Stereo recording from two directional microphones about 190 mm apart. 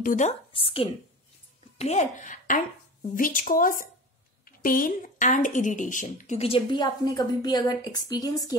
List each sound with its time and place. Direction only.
0.0 s speech: 40° left (ahead or behind)
1.8 s speech: 35° left (ahead or behind); by 8.5 s 20° left (ahead or behind)